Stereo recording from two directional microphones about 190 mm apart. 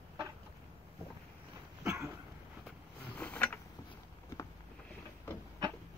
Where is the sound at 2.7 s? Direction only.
5° left (ahead or behind).